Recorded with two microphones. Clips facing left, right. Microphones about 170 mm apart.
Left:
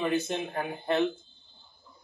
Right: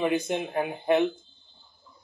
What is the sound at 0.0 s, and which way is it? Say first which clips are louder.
Speech: right 3 dB; 15° right (ahead or behind).